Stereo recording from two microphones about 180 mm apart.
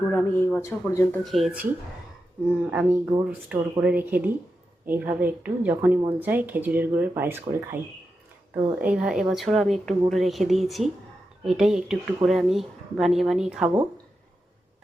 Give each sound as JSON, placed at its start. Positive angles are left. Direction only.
{"t": 0.1, "sound": "speech", "side_deg": 10}
{"t": 1.2, "sound": "speech", "side_deg": 0}
{"t": 2.9, "sound": "speech", "side_deg": -15}
{"t": 8.8, "sound": "speech", "side_deg": -5}